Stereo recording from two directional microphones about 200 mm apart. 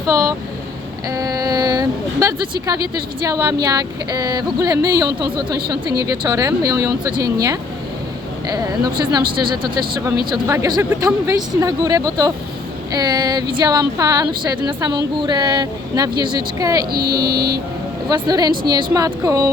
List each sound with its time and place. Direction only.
1.1 s speech: 15° right (ahead or behind)
10.3 s speech: 15° right (ahead or behind)
16.9 s speech: 50° right (ahead or behind)
18.1 s speech: 20° right (ahead or behind)